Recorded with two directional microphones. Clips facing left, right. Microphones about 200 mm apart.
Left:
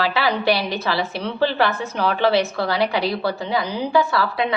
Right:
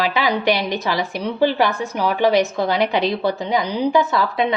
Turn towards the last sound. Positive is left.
turn(degrees=-20)  # may be behind; listen again after turning